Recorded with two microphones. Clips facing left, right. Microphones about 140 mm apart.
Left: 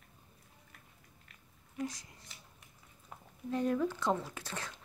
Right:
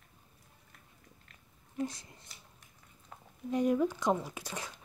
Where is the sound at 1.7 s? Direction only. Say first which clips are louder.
Right 3 dB; 25° right (ahead or behind).